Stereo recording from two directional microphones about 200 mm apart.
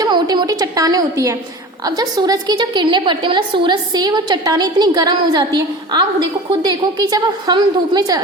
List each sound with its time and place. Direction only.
0.0 s a woman's voice: 20° right (ahead or behind)